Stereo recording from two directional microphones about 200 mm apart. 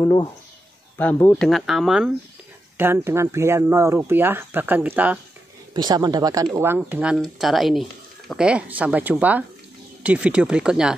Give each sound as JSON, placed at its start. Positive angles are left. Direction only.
{"t": 0.0, "sound": "speech", "side_deg": 20}
{"t": 5.7, "sound": "speech", "side_deg": -20}